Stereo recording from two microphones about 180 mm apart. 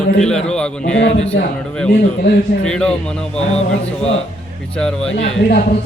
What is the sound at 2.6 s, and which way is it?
Speech, 5° left (ahead or behind).